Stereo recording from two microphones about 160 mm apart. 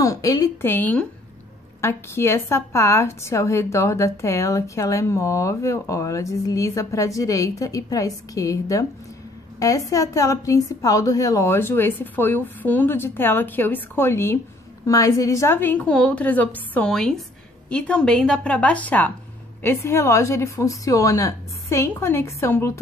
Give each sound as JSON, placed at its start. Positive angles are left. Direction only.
{"t": 0.0, "sound": "a woman's voice", "side_deg": 20}